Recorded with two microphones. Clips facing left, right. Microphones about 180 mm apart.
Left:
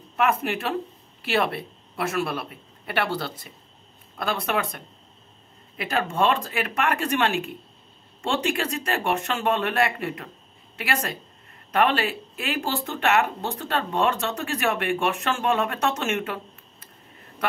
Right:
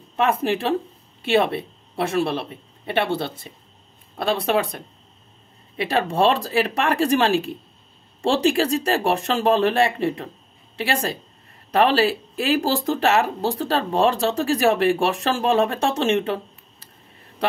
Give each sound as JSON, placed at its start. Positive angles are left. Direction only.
{"t": 0.1, "sound": "speech", "side_deg": -30}